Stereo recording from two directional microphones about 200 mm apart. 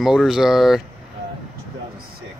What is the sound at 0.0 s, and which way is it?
Speech, centre (ahead or behind).